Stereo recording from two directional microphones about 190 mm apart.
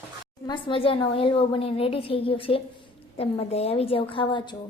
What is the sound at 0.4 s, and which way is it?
A woman's voice, 25° left (ahead or behind).